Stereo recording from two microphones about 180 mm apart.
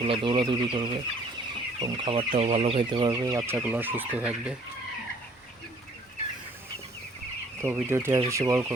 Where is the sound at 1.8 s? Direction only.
25° right (ahead or behind).